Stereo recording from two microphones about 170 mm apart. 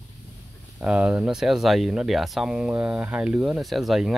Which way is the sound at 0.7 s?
5° right (ahead or behind).